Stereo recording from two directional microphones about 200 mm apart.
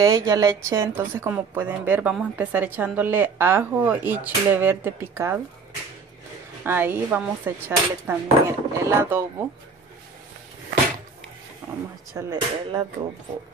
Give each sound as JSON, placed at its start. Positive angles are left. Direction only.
{"t": 0.0, "sound": "a woman's voice", "side_deg": -15}
{"t": 6.6, "sound": "a woman's voice", "side_deg": -10}
{"t": 11.6, "sound": "speech", "side_deg": -10}